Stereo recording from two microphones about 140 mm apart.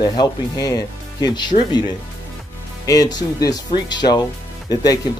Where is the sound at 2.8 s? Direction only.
25° left (ahead or behind).